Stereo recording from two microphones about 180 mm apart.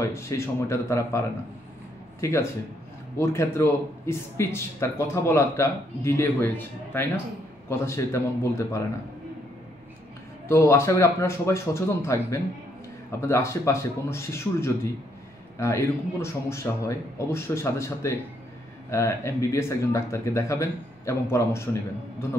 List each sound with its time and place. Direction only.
0.0 s a man's voice: 15° left (ahead or behind)
10.5 s a man's voice: 15° left (ahead or behind)